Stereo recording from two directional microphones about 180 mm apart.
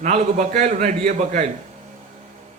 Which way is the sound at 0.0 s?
40° right (ahead or behind).